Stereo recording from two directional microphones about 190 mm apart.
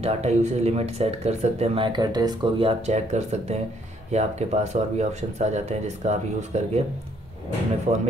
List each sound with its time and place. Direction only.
0.0 s speech: 35° right (ahead or behind)